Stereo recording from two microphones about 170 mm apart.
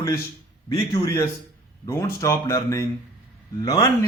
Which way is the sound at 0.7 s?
20° left (ahead or behind).